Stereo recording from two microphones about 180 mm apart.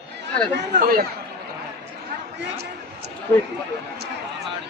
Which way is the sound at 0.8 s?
55° right (ahead or behind).